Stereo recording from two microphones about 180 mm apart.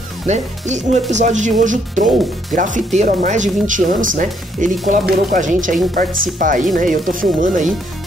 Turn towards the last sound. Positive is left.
turn(degrees=-45)  # may be behind; listen again after turning